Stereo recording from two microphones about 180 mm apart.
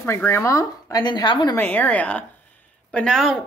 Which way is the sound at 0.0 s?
15° left (ahead or behind).